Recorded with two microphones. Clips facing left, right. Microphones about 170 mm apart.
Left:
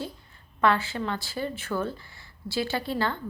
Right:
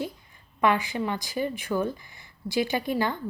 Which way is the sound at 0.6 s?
15° right (ahead or behind).